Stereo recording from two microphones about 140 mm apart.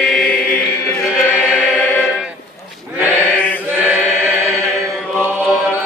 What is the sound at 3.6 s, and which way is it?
Chant, 10° right (ahead or behind).